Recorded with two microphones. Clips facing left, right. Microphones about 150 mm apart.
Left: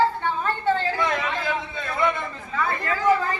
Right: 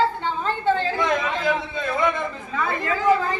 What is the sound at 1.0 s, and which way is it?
Chatter, 20° right (ahead or behind).